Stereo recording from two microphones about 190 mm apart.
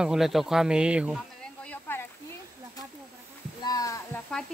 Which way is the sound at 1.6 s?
10° left (ahead or behind).